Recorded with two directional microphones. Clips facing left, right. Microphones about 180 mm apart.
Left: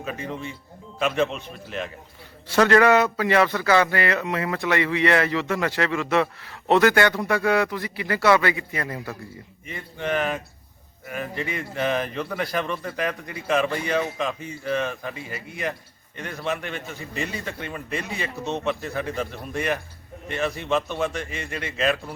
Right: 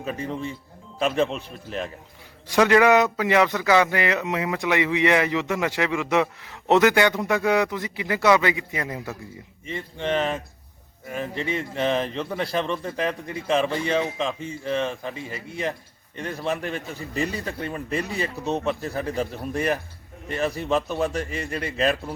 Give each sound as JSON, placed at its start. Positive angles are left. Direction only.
{"t": 0.0, "sound": "a man's voice", "side_deg": -35}
{"t": 1.3, "sound": "a man's voice", "side_deg": 0}
{"t": 2.5, "sound": "a man's voice", "side_deg": -10}
{"t": 9.6, "sound": "a man's voice", "side_deg": -30}